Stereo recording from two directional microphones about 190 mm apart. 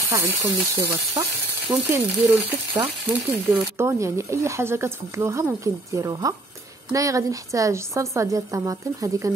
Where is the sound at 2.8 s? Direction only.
15° right (ahead or behind).